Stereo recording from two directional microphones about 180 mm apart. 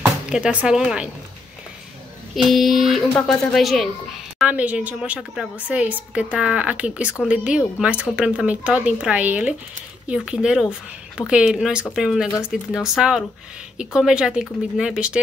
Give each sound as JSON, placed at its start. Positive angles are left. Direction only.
{"t": 0.3, "sound": "speech", "side_deg": -5}
{"t": 2.3, "sound": "a woman's voice", "side_deg": 0}